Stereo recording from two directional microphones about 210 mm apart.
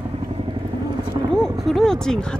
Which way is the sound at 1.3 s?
Centre (ahead or behind).